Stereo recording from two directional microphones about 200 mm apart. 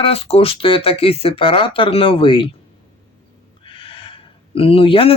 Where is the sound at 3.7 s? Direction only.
25° left (ahead or behind).